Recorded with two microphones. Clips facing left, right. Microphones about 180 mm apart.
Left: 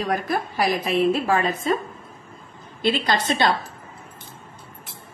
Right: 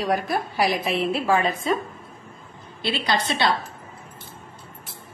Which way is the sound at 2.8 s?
45° left (ahead or behind).